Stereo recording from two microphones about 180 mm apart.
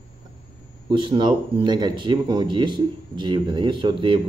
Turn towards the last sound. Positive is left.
turn(degrees=-30)  # may be behind; listen again after turning